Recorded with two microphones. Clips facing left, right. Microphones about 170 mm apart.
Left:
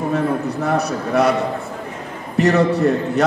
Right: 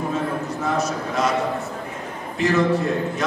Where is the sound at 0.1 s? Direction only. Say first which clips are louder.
Left 5 dB; 65° left (ahead or behind).